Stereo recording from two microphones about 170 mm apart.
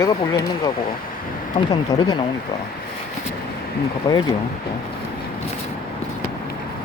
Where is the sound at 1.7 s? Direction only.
25° left (ahead or behind).